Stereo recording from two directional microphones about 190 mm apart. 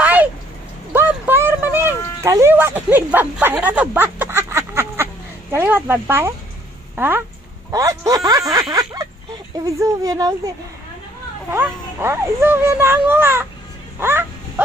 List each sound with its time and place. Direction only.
0.0 s a sound: 10° right (ahead or behind)
5.5 s a child's voice: 10° right (ahead or behind)
11.5 s a child's voice: 10° right (ahead or behind)
13.9 s music: 10° right (ahead or behind)